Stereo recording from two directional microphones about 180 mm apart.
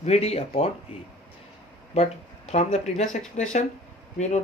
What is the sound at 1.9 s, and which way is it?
Speech, 35° left (ahead or behind).